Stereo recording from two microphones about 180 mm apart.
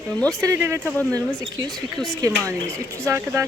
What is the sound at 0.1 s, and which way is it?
Speech, 5° left (ahead or behind).